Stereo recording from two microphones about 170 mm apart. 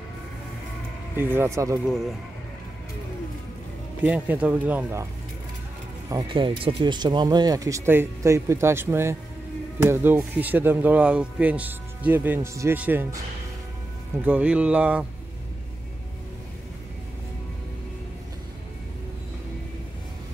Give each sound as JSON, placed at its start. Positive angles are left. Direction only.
{"t": 1.1, "sound": "speech", "side_deg": -15}
{"t": 1.9, "sound": "speech", "side_deg": 0}
{"t": 4.0, "sound": "speech", "side_deg": -10}
{"t": 6.0, "sound": "speech", "side_deg": -25}
{"t": 14.2, "sound": "speech", "side_deg": -10}